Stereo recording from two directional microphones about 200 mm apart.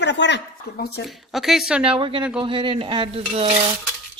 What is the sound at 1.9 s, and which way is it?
Dishes, 25° right (ahead or behind).